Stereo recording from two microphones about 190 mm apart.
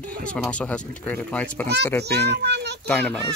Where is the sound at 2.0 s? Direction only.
60° right (ahead or behind).